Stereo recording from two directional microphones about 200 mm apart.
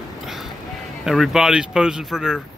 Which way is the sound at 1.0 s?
Centre (ahead or behind).